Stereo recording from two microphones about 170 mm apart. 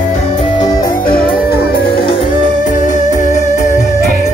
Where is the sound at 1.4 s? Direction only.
65° left (ahead or behind).